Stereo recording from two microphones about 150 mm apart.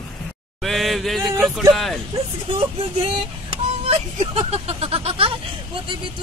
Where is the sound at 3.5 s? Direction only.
40° right (ahead or behind).